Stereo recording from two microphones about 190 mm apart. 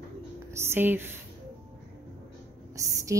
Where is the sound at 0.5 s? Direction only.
15° right (ahead or behind).